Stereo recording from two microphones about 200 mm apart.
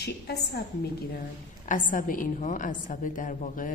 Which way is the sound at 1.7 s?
40° left (ahead or behind).